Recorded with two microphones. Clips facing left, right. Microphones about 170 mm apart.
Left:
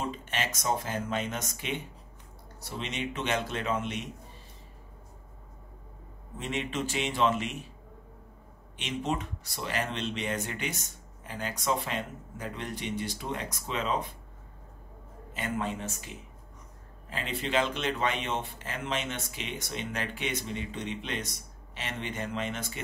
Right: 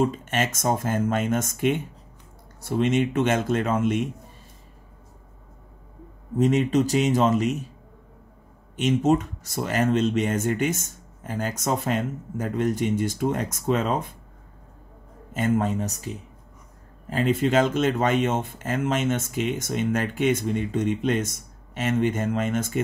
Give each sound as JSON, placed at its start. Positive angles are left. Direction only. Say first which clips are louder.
{"t": 0.0, "sound": "speech", "louder": "right 10 dB", "side_deg": -50}
{"t": 6.3, "sound": "a man's voice", "louder": "right 13 dB", "side_deg": -40}
{"t": 8.7, "sound": "speech", "louder": "right 12 dB", "side_deg": -45}
{"t": 15.3, "sound": "a man's voice", "louder": "right 10 dB", "side_deg": -45}